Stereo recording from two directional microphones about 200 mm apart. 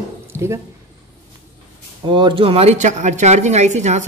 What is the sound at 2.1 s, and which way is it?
A woman's voice, 25° right (ahead or behind).